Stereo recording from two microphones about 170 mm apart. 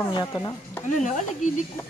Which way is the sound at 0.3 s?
15° left (ahead or behind).